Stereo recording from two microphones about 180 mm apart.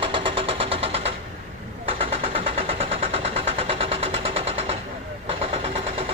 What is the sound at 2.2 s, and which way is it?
Vehicle, 30° right (ahead or behind).